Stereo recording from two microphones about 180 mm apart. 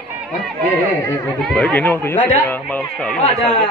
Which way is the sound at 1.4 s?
5° left (ahead or behind).